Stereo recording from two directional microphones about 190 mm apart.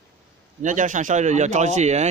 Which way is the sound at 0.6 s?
40° right (ahead or behind).